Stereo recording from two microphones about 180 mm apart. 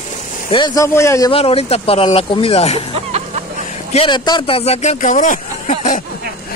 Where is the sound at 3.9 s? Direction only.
30° left (ahead or behind); by 6.0 s 45° left (ahead or behind).